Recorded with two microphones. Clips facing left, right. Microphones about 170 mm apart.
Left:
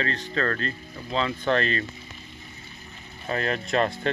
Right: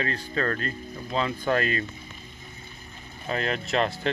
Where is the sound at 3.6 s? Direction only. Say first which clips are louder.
Left 2 dB; 5° right (ahead or behind).